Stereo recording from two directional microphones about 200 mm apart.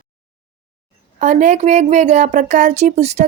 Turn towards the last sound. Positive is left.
turn(degrees=-35)  # may be behind; listen again after turning